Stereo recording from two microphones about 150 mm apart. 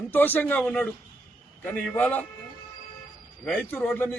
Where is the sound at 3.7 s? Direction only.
15° left (ahead or behind).